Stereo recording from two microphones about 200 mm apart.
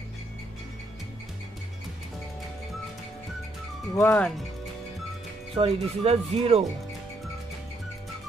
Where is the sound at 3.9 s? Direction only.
10° left (ahead or behind).